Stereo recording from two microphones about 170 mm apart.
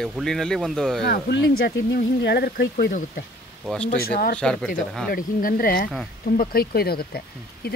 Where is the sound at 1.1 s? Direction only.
75° left (ahead or behind).